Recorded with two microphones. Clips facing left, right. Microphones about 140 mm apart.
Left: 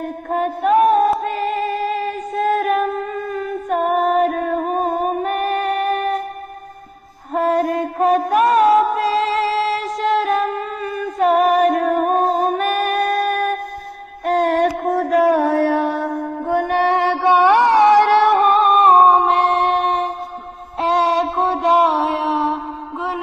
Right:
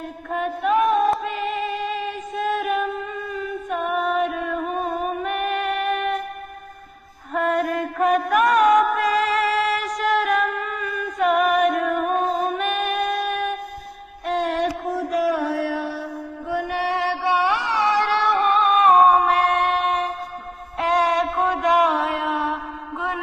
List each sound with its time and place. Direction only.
0.0 s a sound: 40° left (ahead or behind)
1.2 s music: 40° left (ahead or behind)
7.3 s music: 35° left (ahead or behind)
20.8 s mantra: 25° left (ahead or behind)